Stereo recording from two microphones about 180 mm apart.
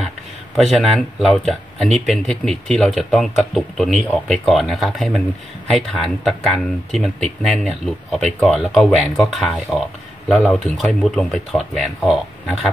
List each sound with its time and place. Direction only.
0.6 s speech: centre (ahead or behind)